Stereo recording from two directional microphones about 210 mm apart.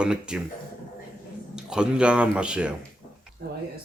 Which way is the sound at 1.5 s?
5° right (ahead or behind).